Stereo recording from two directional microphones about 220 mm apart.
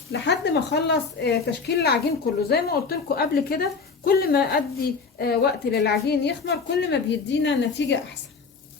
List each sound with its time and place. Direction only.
0.1 s speech: 50° left (ahead or behind)